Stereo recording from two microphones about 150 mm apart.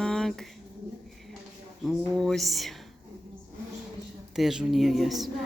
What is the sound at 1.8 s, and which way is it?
Speech, centre (ahead or behind).